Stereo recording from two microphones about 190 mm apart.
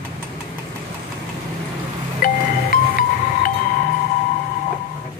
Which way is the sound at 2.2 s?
50° left (ahead or behind).